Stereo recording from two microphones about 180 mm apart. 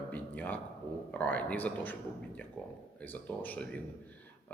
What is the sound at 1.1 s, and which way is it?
Speech, 10° left (ahead or behind).